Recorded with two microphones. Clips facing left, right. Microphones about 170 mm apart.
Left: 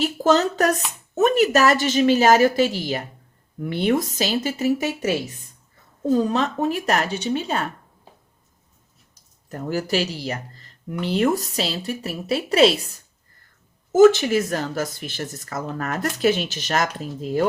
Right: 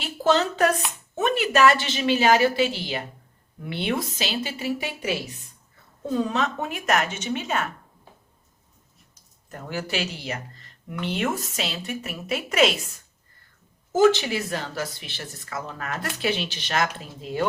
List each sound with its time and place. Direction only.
0.0 s a woman's voice: 40° left (ahead or behind)
9.5 s a woman's voice: 40° left (ahead or behind)
13.9 s a woman's voice: 45° left (ahead or behind)